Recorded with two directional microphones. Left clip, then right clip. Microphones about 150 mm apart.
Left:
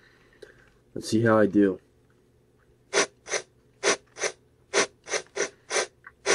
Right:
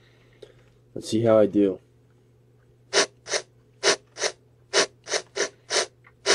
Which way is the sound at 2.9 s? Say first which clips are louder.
Right 2 dB; 25° right (ahead or behind).